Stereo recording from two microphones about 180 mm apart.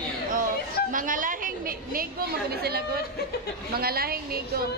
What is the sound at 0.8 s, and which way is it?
A woman's voice, 50° right (ahead or behind).